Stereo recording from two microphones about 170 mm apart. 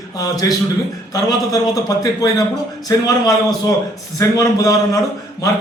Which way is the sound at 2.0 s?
20° left (ahead or behind).